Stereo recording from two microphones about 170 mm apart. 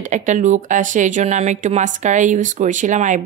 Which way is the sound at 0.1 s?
45° right (ahead or behind).